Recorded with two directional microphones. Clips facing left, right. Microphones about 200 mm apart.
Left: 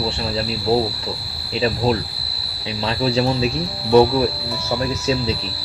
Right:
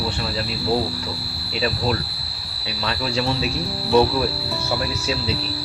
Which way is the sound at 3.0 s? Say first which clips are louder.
Left 5 dB; 35° left (ahead or behind).